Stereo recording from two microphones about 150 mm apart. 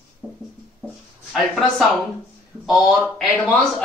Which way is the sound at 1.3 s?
Centre (ahead or behind).